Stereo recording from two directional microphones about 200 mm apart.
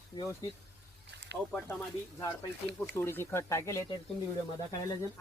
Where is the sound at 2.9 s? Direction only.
10° left (ahead or behind).